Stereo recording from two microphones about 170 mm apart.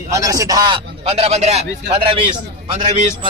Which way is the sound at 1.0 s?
35° right (ahead or behind).